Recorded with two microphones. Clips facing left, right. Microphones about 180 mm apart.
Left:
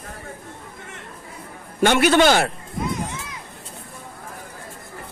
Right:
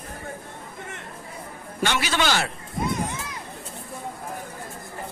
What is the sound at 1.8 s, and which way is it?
Speech, 55° left (ahead or behind).